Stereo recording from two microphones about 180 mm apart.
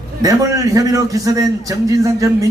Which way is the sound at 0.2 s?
20° right (ahead or behind).